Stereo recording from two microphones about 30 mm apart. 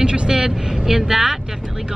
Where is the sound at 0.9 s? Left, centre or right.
Centre.